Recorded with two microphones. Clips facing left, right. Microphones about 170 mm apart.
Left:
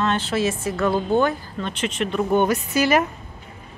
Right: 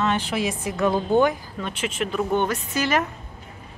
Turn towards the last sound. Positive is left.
turn(degrees=10)  # may be behind; listen again after turning